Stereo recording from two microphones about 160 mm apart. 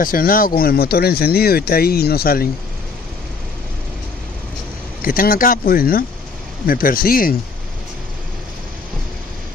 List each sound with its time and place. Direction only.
0.0 s speech: 65° left (ahead or behind)
0.6 s speech: 75° left (ahead or behind)
5.0 s speech: 65° left (ahead or behind)